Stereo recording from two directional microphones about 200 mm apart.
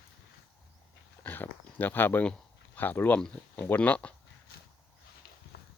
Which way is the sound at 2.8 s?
10° left (ahead or behind).